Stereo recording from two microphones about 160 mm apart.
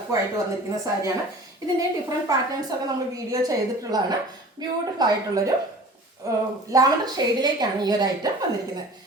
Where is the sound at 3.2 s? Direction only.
25° right (ahead or behind).